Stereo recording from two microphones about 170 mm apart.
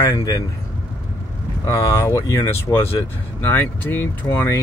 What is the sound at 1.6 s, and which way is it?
Speech, 15° left (ahead or behind).